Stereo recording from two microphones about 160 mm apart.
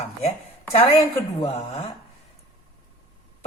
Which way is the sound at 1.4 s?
35° left (ahead or behind).